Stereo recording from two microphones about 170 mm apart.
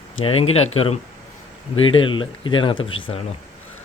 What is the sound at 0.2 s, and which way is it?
Speech, 35° left (ahead or behind).